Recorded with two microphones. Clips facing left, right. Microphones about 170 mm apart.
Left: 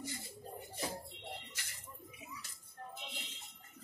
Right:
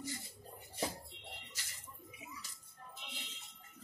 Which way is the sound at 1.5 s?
60° left (ahead or behind).